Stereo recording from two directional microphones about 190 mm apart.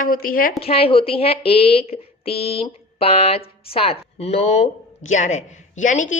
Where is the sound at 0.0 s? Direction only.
45° left (ahead or behind).